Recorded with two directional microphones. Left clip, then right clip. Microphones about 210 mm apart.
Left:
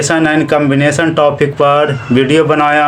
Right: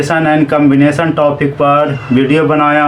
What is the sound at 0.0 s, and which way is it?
Speech, 45° left (ahead or behind).